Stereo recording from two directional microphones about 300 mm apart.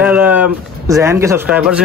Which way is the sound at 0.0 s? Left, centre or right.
Centre.